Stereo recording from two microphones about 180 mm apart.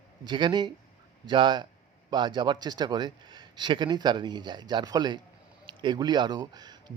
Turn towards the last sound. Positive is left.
turn(degrees=-25)  # may be behind; listen again after turning